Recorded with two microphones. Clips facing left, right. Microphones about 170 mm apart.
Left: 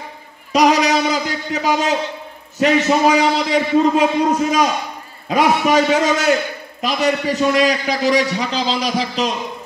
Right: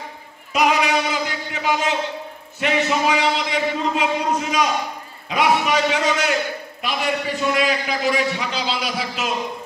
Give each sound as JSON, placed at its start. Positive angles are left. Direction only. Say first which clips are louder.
{"t": 0.5, "sound": "a sound", "louder": "left 5 dB", "side_deg": 35}
{"t": 2.6, "sound": "a man's voice", "louder": "left 6 dB", "side_deg": 40}
{"t": 5.3, "sound": "a man's voice", "louder": "left 4 dB", "side_deg": 45}